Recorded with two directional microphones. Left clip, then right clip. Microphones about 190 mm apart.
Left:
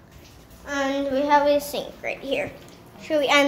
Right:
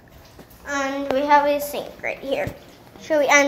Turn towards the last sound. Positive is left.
turn(degrees=0)  # may be behind; listen again after turning